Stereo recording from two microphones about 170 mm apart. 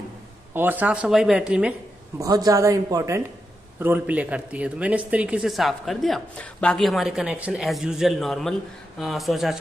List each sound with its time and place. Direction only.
0.6 s speech: 10° right (ahead or behind)
2.1 s a woman's voice: 20° right (ahead or behind); by 9.6 s centre (ahead or behind)